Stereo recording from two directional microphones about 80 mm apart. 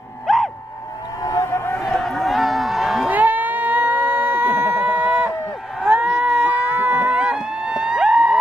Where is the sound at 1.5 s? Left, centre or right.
Left.